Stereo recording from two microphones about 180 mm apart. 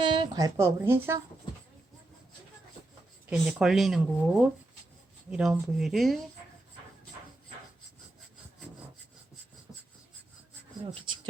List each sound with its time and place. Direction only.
0.0 s a woman's voice: 25° right (ahead or behind)
3.2 s speech: centre (ahead or behind)